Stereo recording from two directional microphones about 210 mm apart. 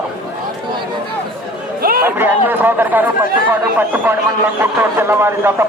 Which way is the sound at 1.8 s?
45° right (ahead or behind).